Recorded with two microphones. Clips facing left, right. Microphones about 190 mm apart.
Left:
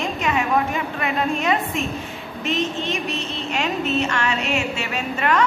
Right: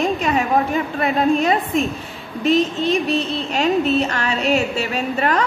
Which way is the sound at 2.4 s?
35° right (ahead or behind).